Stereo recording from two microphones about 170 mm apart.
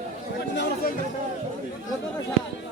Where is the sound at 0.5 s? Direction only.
75° left (ahead or behind).